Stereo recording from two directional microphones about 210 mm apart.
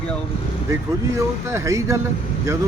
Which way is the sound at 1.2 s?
15° right (ahead or behind).